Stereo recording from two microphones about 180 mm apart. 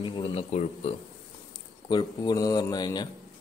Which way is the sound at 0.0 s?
30° left (ahead or behind).